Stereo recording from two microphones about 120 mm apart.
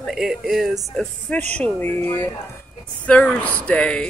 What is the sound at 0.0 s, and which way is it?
Speech, centre (ahead or behind).